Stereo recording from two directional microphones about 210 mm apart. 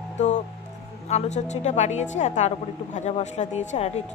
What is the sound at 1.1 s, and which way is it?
Speech, 35° left (ahead or behind).